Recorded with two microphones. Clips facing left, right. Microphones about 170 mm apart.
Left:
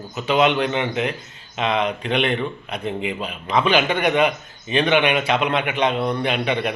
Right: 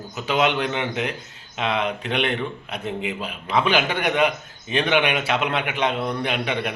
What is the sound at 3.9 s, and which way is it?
Speech, 55° left (ahead or behind).